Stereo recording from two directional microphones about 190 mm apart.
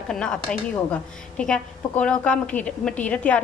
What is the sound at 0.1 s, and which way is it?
A woman's voice, 5° left (ahead or behind).